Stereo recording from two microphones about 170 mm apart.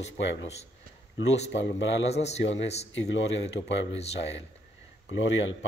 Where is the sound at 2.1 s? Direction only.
40° left (ahead or behind).